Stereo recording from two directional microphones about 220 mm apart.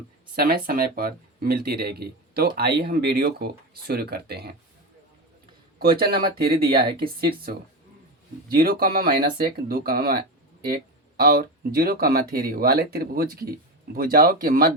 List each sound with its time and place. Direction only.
0.3 s speech: 40° right (ahead or behind)
5.8 s speech: 45° right (ahead or behind)
6.6 s speech: 25° right (ahead or behind)
8.5 s speech: 40° right (ahead or behind)